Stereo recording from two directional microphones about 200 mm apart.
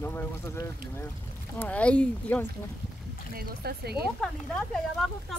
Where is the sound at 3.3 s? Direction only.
50° right (ahead or behind).